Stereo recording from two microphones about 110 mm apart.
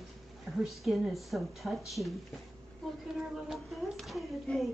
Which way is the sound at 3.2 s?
Centre (ahead or behind).